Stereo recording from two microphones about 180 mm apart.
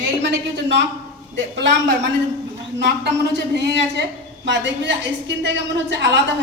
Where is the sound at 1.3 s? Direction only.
70° right (ahead or behind).